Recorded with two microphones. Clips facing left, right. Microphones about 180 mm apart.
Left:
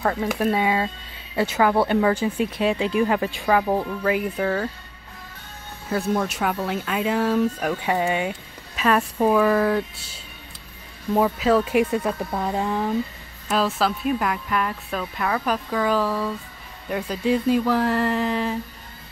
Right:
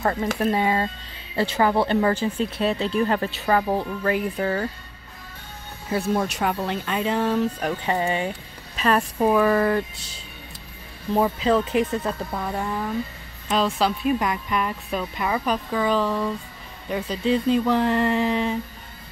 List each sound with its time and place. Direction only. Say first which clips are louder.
0.0 s speech: even; 5° left (ahead or behind)
5.9 s speech: even; 5° right (ahead or behind); by 12.8 s 20° left (ahead or behind)
13.5 s speech: even; 5° left (ahead or behind)